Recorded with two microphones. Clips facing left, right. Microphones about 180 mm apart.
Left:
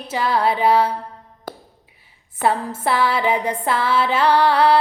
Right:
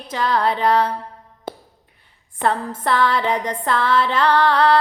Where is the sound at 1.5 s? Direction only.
25° right (ahead or behind).